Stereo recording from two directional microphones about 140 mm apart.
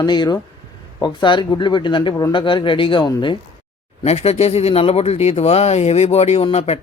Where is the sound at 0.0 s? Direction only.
30° left (ahead or behind).